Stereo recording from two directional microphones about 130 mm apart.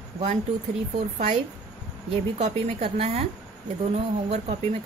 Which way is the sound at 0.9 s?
60° right (ahead or behind).